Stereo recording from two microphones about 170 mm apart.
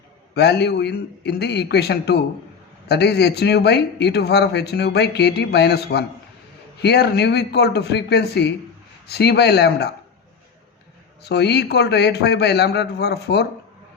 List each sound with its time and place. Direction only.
0.3 s speech: 75° left (ahead or behind)
11.2 s speech: 75° left (ahead or behind)